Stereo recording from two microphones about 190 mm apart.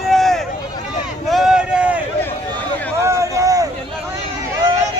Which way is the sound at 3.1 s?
15° right (ahead or behind).